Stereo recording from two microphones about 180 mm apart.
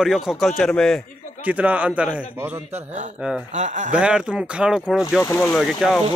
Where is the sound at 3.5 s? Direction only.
40° right (ahead or behind).